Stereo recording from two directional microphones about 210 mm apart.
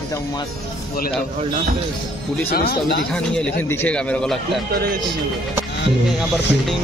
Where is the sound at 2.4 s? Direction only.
45° left (ahead or behind).